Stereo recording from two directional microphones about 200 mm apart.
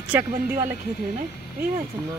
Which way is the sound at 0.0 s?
10° right (ahead or behind).